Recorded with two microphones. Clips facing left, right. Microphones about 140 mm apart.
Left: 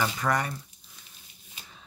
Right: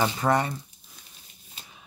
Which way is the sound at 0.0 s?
25° right (ahead or behind).